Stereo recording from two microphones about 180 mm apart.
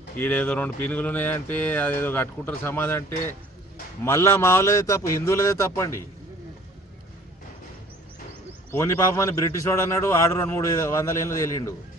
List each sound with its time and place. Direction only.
0.2 s speech: 10° left (ahead or behind)
8.7 s speech: 15° left (ahead or behind)